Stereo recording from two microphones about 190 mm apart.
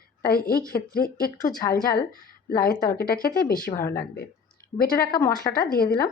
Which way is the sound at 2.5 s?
50° left (ahead or behind).